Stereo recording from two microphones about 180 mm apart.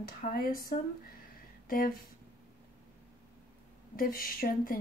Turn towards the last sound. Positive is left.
turn(degrees=50)  # may be behind; listen again after turning